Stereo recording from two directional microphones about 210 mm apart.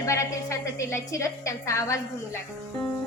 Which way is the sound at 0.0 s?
15° left (ahead or behind).